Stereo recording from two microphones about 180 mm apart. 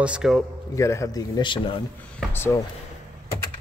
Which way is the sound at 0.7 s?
15° left (ahead or behind).